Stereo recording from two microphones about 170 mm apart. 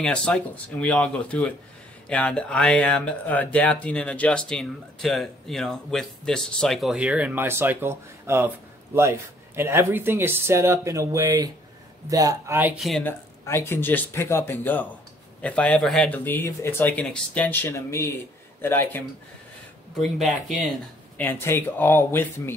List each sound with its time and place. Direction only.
0.0 s speech: 5° left (ahead or behind); by 8.5 s 15° right (ahead or behind)
9.6 s speech: 15° right (ahead or behind)
13.0 s speech: 15° left (ahead or behind)
20.0 s speech: centre (ahead or behind)
21.2 s speech: 15° left (ahead or behind)